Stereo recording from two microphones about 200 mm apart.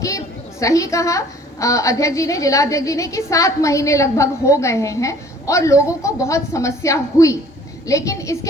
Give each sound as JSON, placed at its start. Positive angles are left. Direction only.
{"t": 0.6, "sound": "a woman's voice", "side_deg": 15}